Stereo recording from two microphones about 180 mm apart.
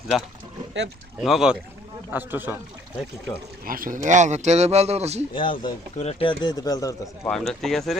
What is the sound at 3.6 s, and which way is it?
Speech, 50° right (ahead or behind).